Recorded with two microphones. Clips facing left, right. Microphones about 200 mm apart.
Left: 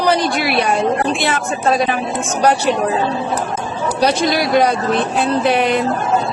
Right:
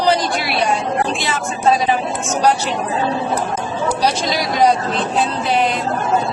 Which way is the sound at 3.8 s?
55° left (ahead or behind).